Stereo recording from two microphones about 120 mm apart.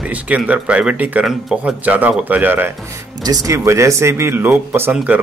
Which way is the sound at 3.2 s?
30° right (ahead or behind).